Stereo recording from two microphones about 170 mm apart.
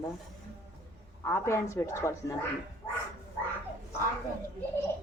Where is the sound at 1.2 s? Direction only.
15° left (ahead or behind).